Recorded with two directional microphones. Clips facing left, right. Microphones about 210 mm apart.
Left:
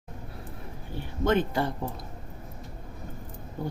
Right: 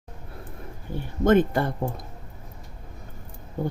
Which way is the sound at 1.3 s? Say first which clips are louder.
Right 6 dB; 50° right (ahead or behind).